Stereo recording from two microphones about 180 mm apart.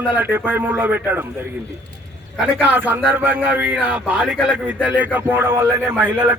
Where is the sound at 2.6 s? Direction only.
10° right (ahead or behind).